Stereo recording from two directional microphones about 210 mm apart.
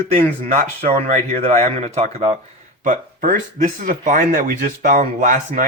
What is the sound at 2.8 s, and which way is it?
Speech, 40° right (ahead or behind).